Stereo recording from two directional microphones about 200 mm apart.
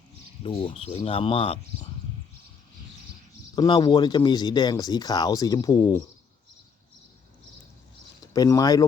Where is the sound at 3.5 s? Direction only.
20° left (ahead or behind).